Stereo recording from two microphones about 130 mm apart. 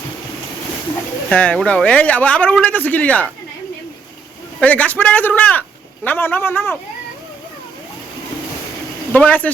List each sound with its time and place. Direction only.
1.3 s speech: 10° left (ahead or behind)
4.6 s speech: 10° left (ahead or behind)
9.1 s speech: 10° left (ahead or behind)